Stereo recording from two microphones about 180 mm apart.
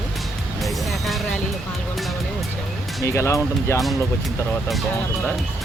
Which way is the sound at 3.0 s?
15° left (ahead or behind).